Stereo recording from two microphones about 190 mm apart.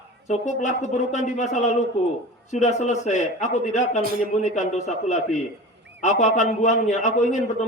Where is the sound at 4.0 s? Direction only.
50° right (ahead or behind).